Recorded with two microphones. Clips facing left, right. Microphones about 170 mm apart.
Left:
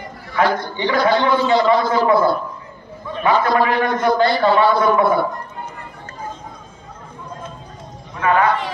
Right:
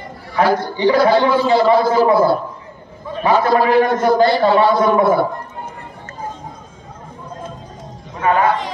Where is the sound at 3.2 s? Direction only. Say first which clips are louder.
Right 2 dB; 35° right (ahead or behind).